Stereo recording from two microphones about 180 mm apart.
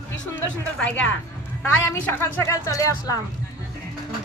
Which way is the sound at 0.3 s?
5° left (ahead or behind).